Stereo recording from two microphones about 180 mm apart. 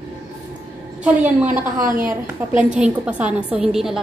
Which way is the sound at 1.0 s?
10° right (ahead or behind).